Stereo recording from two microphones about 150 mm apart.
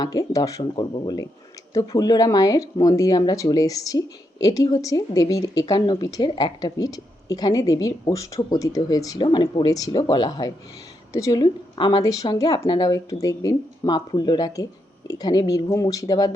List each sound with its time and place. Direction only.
0.0 s speech: 25° left (ahead or behind)